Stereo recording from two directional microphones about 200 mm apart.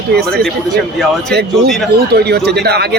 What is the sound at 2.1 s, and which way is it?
Speech, 55° right (ahead or behind).